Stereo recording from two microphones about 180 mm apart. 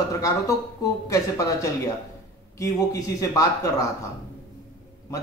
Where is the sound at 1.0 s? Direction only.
20° left (ahead or behind).